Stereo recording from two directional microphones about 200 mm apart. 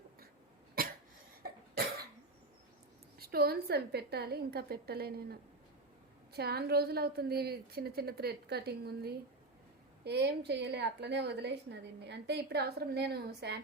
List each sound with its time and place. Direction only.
0.8 s cough: 50° right (ahead or behind)
3.2 s a woman's voice: 50° right (ahead or behind)